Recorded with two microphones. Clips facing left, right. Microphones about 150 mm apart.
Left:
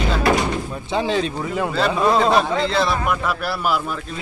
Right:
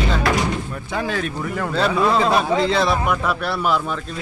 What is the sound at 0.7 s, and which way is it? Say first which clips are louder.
Speech: left 3 dB; 25° left (ahead or behind).